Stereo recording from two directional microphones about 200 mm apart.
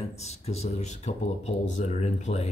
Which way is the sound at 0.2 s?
35° left (ahead or behind).